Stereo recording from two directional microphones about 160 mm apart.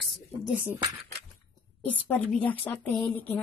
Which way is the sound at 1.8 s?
10° left (ahead or behind).